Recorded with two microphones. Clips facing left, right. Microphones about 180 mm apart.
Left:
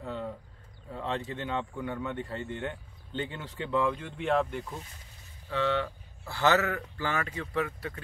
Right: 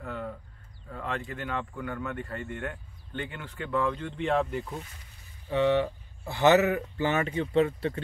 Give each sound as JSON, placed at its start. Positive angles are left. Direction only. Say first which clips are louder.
{"t": 0.0, "sound": "a sound", "louder": "even", "side_deg": 20}
{"t": 0.8, "sound": "speech", "louder": "left 1 dB", "side_deg": 20}
{"t": 5.5, "sound": "speech", "louder": "right 5 dB", "side_deg": -15}